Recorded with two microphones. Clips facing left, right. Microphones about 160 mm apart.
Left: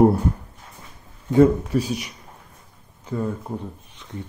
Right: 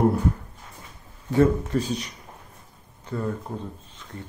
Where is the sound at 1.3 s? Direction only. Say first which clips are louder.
Left 4 dB; 15° left (ahead or behind).